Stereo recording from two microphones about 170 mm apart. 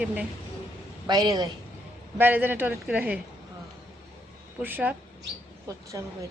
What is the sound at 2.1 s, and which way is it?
Speech, 10° right (ahead or behind).